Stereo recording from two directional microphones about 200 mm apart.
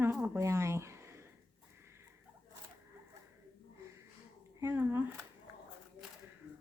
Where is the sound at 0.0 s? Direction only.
10° right (ahead or behind).